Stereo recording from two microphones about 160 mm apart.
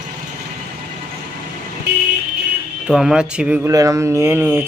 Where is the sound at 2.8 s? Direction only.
5° right (ahead or behind).